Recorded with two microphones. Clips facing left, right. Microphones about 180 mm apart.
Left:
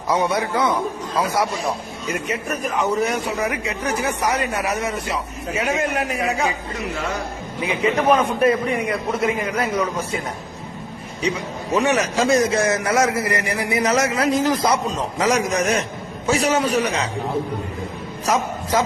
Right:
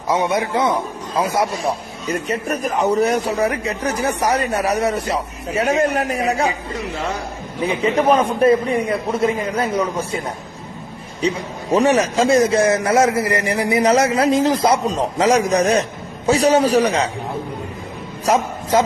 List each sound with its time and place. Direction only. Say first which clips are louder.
0.1 s a man's voice: right 2 dB; 20° right (ahead or behind)
2.0 s a man's voice: right 4 dB; 35° right (ahead or behind)
8.1 s a man's voice: right 4 dB; 30° right (ahead or behind)
11.7 s a man's voice: right 4 dB; 30° right (ahead or behind)
18.3 s a man's voice: right 4 dB; 30° right (ahead or behind)